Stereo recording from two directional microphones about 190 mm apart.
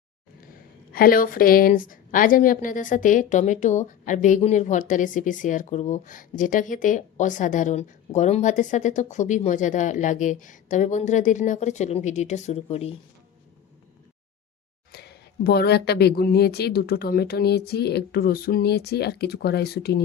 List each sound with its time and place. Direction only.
0.9 s a woman's voice: 50° left (ahead or behind); by 12.9 s 35° left (ahead or behind)
14.9 s a woman's voice: 60° left (ahead or behind)